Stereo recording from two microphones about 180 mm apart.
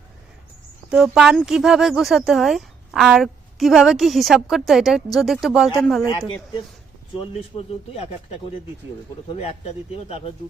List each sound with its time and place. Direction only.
0.9 s speech: 5° right (ahead or behind)
9.3 s speech: 35° left (ahead or behind)